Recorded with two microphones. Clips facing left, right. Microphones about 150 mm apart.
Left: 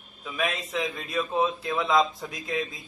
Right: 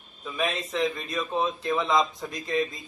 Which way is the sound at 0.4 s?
Centre (ahead or behind).